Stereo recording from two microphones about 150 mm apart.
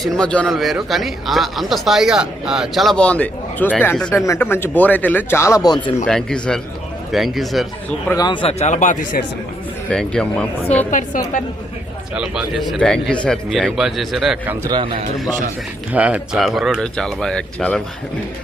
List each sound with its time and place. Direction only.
0.0 s speech: 5° left (ahead or behind)
4.1 s speech: 20° left (ahead or behind)
6.1 s speech: 5° left (ahead or behind)
8.1 s speech: 30° left (ahead or behind); by 9.2 s 60° left (ahead or behind)
9.9 s speech: 5° left (ahead or behind)
12.1 s speech: 5° right (ahead or behind)
14.4 s a man's voice: 10° right (ahead or behind)
14.7 s a man's voice: 35° right (ahead or behind)
15.9 s speech: 10° right (ahead or behind); by 17.8 s 5° left (ahead or behind)